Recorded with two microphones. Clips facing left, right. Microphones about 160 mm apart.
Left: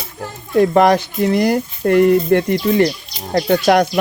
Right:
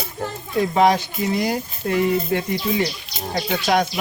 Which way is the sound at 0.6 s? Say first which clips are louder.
Left 4 dB; 60° left (ahead or behind).